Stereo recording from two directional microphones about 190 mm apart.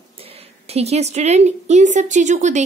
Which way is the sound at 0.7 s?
35° right (ahead or behind).